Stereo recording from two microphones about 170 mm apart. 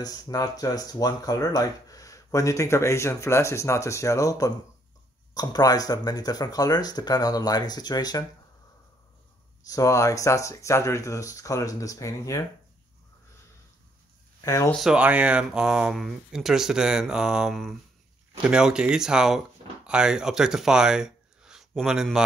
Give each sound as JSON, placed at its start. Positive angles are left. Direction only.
{"t": 0.0, "sound": "speech", "side_deg": 20}
{"t": 9.7, "sound": "speech", "side_deg": 20}
{"t": 14.4, "sound": "speech", "side_deg": 20}
{"t": 14.7, "sound": "speech", "side_deg": -5}